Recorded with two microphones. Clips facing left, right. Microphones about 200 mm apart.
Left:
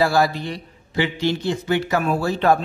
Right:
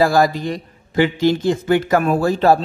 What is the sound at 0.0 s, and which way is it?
A man's voice, 45° right (ahead or behind).